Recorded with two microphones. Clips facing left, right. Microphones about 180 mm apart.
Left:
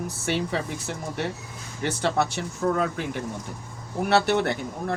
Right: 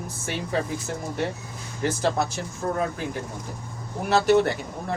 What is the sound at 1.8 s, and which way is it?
Speech, 65° left (ahead or behind).